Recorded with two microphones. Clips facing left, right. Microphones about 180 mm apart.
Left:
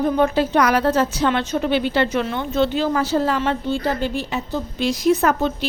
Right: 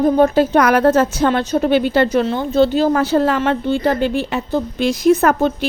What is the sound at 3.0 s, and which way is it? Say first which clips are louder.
A woman's voice: right 4 dB; 60° right (ahead or behind).